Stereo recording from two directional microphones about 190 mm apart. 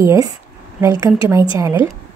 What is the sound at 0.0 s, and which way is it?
A woman's voice, 15° right (ahead or behind).